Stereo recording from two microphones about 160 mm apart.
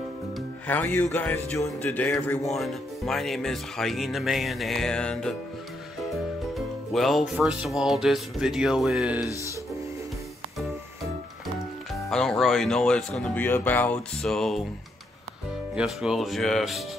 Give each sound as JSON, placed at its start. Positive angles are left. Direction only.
{"t": 0.7, "sound": "speech", "side_deg": 10}
{"t": 2.4, "sound": "speech", "side_deg": 0}
{"t": 6.9, "sound": "speech", "side_deg": 0}
{"t": 9.2, "sound": "speech", "side_deg": 20}
{"t": 11.9, "sound": "speech", "side_deg": 5}
{"t": 15.7, "sound": "speech", "side_deg": -5}